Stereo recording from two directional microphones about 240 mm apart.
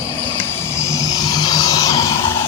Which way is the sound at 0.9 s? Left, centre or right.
Centre.